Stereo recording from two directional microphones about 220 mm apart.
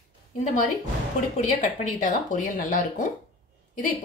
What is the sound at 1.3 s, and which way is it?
Speech, 35° left (ahead or behind).